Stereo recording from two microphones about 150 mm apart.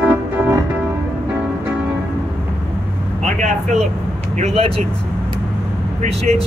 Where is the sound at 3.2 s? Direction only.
50° right (ahead or behind).